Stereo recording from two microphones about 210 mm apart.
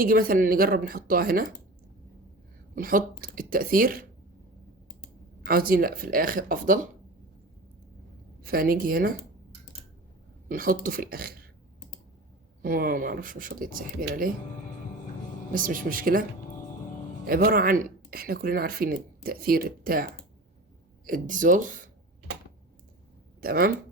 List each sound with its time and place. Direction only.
0.0 s speech: 45° right (ahead or behind)
2.7 s speech: 40° right (ahead or behind)
5.5 s speech: 45° right (ahead or behind)
8.4 s speech: 45° right (ahead or behind)
10.5 s speech: 40° right (ahead or behind)
12.6 s speech: 45° right (ahead or behind)
15.5 s speech: 40° right (ahead or behind)
17.2 s speech: 45° right (ahead or behind)
23.4 s speech: 45° right (ahead or behind)